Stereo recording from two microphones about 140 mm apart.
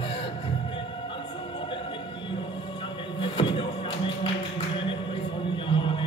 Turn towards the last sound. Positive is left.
turn(degrees=35)  # may be behind; listen again after turning